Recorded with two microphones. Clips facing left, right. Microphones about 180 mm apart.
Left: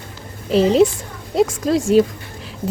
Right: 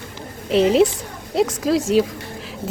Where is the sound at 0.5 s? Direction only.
Centre (ahead or behind).